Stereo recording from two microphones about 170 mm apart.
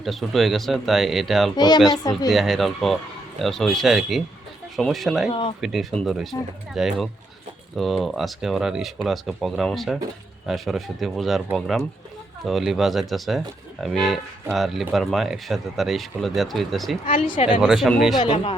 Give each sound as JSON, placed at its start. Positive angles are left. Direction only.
{"t": 0.0, "sound": "speech", "side_deg": 0}
{"t": 1.5, "sound": "speech", "side_deg": 25}
{"t": 2.3, "sound": "speech", "side_deg": 0}
{"t": 5.3, "sound": "speech", "side_deg": 30}
{"t": 5.5, "sound": "speech", "side_deg": 0}
{"t": 12.5, "sound": "speech", "side_deg": 0}
{"t": 17.1, "sound": "speech", "side_deg": 30}
{"t": 17.3, "sound": "speech", "side_deg": 45}
{"t": 17.6, "sound": "speech", "side_deg": -5}
{"t": 18.2, "sound": "speech", "side_deg": 30}